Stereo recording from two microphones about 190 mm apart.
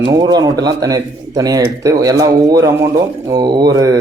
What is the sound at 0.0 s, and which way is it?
Speech, 20° right (ahead or behind).